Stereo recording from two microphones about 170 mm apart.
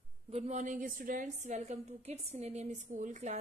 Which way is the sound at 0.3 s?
40° right (ahead or behind).